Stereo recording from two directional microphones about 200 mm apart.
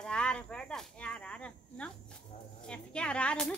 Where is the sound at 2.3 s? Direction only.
35° left (ahead or behind).